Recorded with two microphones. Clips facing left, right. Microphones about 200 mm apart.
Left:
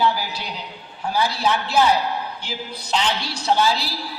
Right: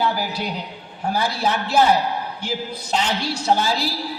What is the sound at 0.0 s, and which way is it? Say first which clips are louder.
A man's voice: even; 50° right (ahead or behind).